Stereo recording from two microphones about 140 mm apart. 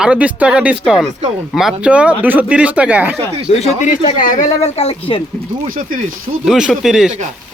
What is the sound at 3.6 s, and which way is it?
Speech, 60° left (ahead or behind).